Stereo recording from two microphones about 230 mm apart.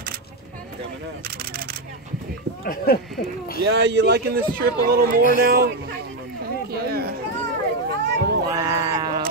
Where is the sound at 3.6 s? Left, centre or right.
Right.